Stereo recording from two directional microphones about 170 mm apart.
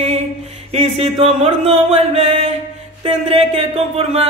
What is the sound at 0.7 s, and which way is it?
Speech, 35° right (ahead or behind).